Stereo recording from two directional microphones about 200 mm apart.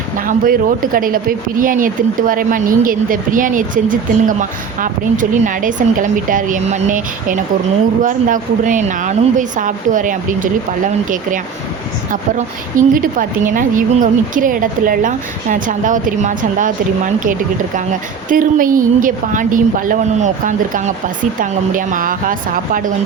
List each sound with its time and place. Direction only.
0.2 s a woman's voice: 45° right (ahead or behind)
12.7 s a woman's voice: 45° right (ahead or behind)
18.3 s a woman's voice: 40° right (ahead or behind)